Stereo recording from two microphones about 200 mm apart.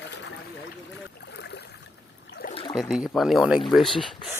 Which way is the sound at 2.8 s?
Centre (ahead or behind).